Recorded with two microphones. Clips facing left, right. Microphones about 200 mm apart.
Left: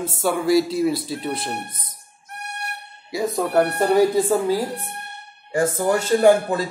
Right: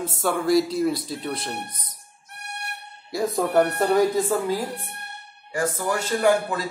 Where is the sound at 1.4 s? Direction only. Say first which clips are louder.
Left 3 dB; 25° left (ahead or behind).